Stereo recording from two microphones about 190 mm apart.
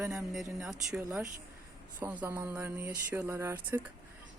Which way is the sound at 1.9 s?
10° right (ahead or behind).